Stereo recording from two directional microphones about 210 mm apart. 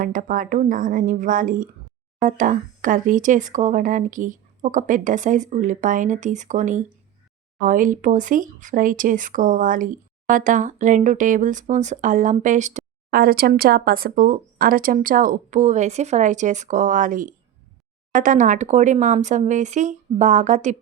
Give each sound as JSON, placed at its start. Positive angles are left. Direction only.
{"t": 0.0, "sound": "speech", "side_deg": -40}